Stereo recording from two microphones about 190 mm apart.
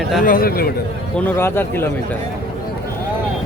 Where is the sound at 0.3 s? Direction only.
50° left (ahead or behind).